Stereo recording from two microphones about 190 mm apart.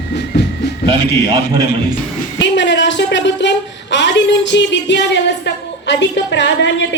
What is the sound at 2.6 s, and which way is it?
A woman's voice, 70° left (ahead or behind).